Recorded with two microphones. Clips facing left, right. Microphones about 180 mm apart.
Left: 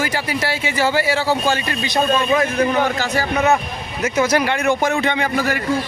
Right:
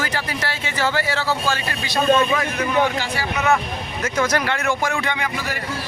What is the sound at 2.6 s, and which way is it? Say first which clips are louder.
Speech: left 2 dB; 45° left (ahead or behind).